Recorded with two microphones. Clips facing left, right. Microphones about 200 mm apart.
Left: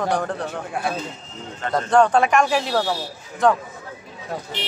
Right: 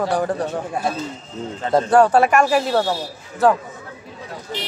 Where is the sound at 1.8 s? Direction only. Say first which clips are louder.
Right 1 dB; 10° right (ahead or behind).